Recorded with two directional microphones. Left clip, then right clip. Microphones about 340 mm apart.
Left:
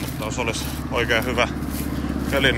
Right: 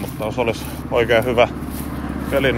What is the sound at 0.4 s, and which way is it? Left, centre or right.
Speech, centre.